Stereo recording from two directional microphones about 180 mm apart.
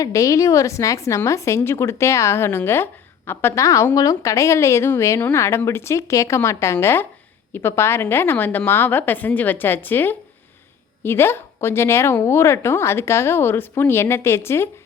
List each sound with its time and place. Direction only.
0.0 s a woman's voice: 20° left (ahead or behind)